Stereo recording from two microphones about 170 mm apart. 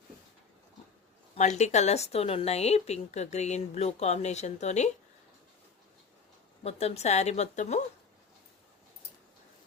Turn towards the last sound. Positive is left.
turn(degrees=40)  # may be behind; listen again after turning